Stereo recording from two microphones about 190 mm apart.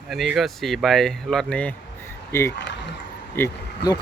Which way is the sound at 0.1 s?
Centre (ahead or behind).